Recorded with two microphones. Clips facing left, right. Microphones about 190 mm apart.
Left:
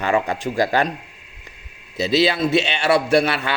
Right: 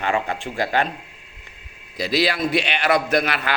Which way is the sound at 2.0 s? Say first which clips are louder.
Left 3 dB; 25° left (ahead or behind).